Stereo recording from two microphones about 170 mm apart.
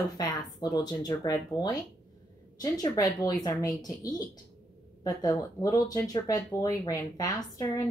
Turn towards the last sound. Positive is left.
turn(degrees=20)  # may be behind; listen again after turning